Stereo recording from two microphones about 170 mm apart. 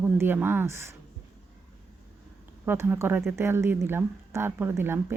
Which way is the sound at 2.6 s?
10° right (ahead or behind).